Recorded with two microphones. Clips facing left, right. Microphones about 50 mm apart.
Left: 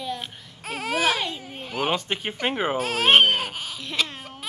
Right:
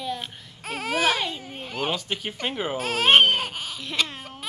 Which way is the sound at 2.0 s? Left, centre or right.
Left.